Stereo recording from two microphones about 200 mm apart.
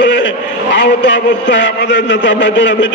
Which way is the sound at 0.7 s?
65° left (ahead or behind).